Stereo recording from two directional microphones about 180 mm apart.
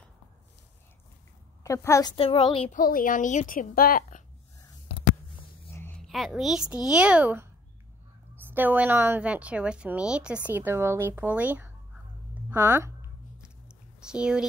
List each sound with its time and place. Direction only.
1.6 s a woman's voice: 15° left (ahead or behind)
2.1 s speech: 30° left (ahead or behind)
2.7 s a woman's voice: 50° left (ahead or behind)
5.7 s a sound: 10° left (ahead or behind)
6.0 s a woman's voice: centre (ahead or behind)
8.5 s a woman's voice: 10° right (ahead or behind)
14.0 s speech: 5° right (ahead or behind)